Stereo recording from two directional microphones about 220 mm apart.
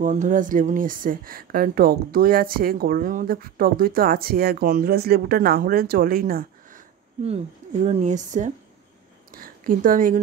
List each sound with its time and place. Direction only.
0.0 s speech: 35° right (ahead or behind)
7.2 s speech: 30° right (ahead or behind)